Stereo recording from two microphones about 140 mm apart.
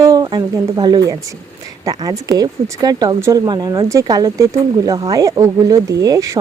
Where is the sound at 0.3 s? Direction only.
30° right (ahead or behind).